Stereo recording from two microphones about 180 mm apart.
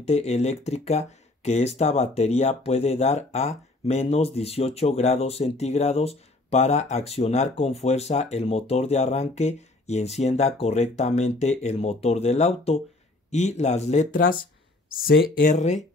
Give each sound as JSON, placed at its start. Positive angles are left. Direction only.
{"t": 0.0, "sound": "speech", "side_deg": 35}